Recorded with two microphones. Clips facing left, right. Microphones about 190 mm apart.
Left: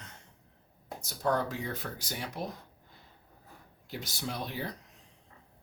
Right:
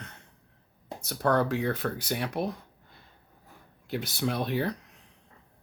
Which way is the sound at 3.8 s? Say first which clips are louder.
Right 8 dB; 65° right (ahead or behind).